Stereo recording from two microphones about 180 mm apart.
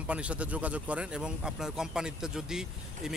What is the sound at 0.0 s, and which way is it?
Speech, 5° right (ahead or behind).